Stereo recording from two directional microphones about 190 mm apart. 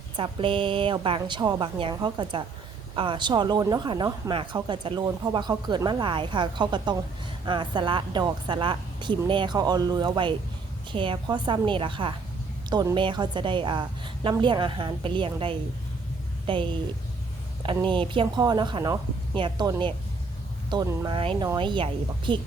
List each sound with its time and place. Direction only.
0.2 s speech: 25° right (ahead or behind)
17.8 s speech: 25° right (ahead or behind)